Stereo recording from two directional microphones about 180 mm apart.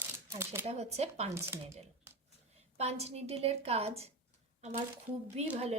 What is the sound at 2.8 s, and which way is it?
Speech, 35° right (ahead or behind).